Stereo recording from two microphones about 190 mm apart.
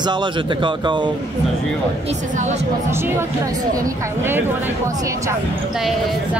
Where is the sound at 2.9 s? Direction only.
15° right (ahead or behind).